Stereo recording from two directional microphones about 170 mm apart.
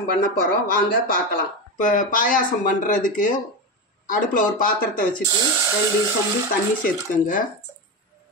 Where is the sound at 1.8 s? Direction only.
50° left (ahead or behind).